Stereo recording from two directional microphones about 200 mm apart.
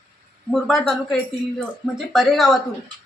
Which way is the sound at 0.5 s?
Centre (ahead or behind).